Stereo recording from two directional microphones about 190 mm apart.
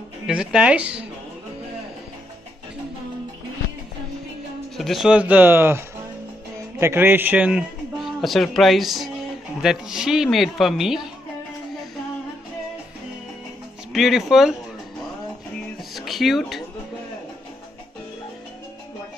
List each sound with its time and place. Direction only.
0.3 s speech: 5° right (ahead or behind)
4.7 s speech: centre (ahead or behind)
6.8 s a man's voice: 10° right (ahead or behind)
13.9 s speech: centre (ahead or behind)
15.9 s guitar: centre (ahead or behind)